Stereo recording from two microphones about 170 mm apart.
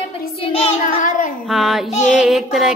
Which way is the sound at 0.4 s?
35° left (ahead or behind).